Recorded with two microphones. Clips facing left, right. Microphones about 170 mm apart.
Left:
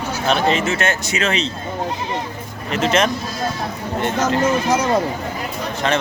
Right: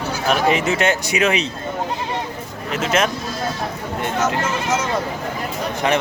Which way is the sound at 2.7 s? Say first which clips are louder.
Left 2 dB; 5° right (ahead or behind).